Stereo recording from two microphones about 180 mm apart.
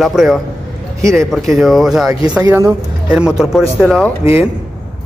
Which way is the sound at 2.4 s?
15° right (ahead or behind).